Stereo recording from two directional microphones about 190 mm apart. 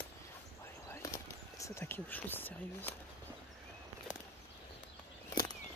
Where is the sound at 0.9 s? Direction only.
15° left (ahead or behind).